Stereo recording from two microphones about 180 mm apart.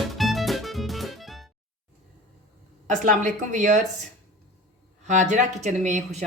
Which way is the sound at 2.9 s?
45° right (ahead or behind).